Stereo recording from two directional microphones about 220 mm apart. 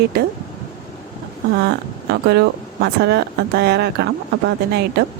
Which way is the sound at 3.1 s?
50° right (ahead or behind).